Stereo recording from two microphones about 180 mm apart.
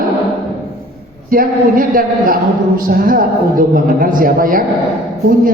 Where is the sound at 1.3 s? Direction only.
50° right (ahead or behind).